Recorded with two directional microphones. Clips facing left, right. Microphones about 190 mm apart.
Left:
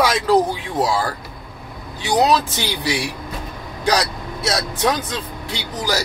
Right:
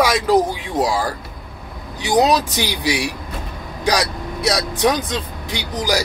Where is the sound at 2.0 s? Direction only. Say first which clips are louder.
Right 1 dB; 15° right (ahead or behind).